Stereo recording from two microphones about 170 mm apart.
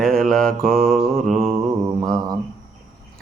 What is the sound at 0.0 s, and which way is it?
Mantra, centre (ahead or behind).